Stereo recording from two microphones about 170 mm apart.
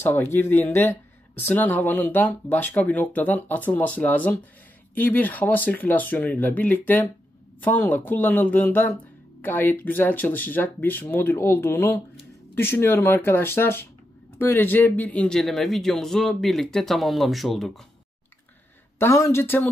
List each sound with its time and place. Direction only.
0.0 s speech: 15° left (ahead or behind)
18.9 s speech: 15° left (ahead or behind)